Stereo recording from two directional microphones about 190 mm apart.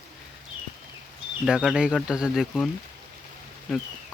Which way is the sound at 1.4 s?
5° right (ahead or behind).